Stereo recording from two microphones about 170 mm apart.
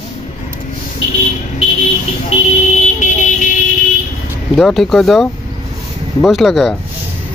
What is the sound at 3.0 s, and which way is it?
Vehicle, 45° left (ahead or behind).